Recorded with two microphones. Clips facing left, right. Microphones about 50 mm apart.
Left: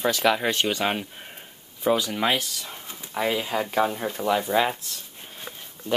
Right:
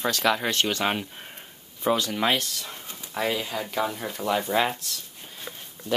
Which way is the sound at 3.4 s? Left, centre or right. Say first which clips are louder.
Left 4 dB; left.